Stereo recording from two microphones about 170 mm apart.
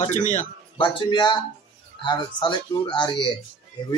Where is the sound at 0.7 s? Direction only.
30° left (ahead or behind).